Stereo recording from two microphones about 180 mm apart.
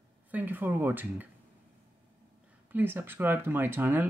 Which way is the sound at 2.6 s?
10° right (ahead or behind).